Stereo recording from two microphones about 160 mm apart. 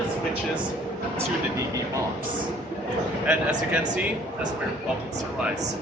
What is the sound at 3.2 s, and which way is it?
Speech, 10° right (ahead or behind).